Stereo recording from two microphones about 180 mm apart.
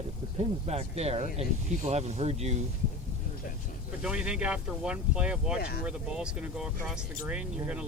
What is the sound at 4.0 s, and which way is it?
Speech, 5° right (ahead or behind).